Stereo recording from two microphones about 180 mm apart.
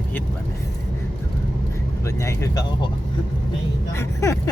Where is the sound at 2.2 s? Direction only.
20° left (ahead or behind).